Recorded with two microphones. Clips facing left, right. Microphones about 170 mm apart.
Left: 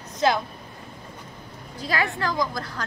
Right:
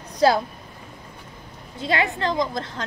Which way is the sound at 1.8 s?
25° right (ahead or behind).